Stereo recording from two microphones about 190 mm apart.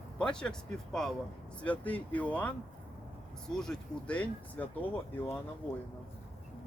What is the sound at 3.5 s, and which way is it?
Speech, 5° left (ahead or behind).